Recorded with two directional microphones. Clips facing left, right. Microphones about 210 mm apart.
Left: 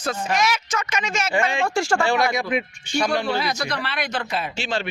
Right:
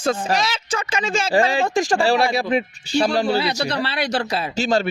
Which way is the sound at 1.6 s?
15° right (ahead or behind).